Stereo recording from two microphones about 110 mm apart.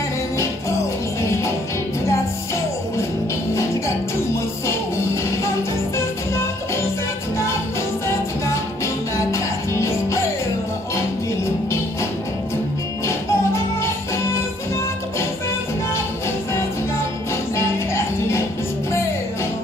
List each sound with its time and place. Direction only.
0.4 s music: 25° left (ahead or behind)
4.6 s music: 25° left (ahead or behind)
8.8 s music: 25° left (ahead or behind)
13.0 s music: 25° left (ahead or behind)
17.6 s music: 25° left (ahead or behind)